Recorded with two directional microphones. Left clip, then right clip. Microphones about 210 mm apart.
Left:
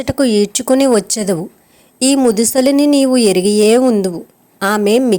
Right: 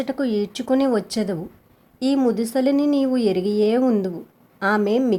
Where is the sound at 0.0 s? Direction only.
35° left (ahead or behind).